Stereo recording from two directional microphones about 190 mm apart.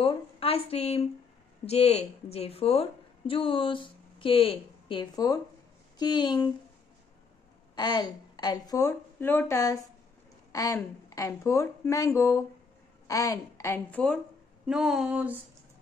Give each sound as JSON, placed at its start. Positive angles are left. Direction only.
{"t": 0.0, "sound": "a woman's voice", "side_deg": 30}
{"t": 7.7, "sound": "a woman's voice", "side_deg": 20}
{"t": 14.7, "sound": "a sound", "side_deg": -5}